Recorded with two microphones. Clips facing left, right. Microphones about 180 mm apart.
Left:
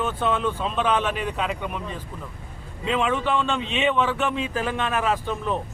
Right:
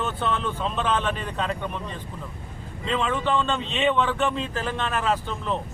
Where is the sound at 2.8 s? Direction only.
10° left (ahead or behind).